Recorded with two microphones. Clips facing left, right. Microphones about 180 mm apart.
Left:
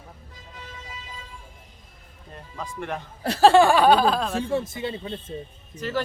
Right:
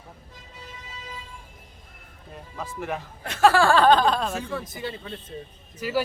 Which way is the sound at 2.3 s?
5° right (ahead or behind).